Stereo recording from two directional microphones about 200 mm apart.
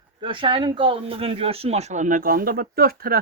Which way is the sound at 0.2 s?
25° right (ahead or behind).